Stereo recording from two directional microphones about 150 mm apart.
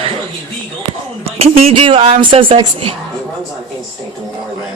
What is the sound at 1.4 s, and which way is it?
A woman's voice, 40° right (ahead or behind).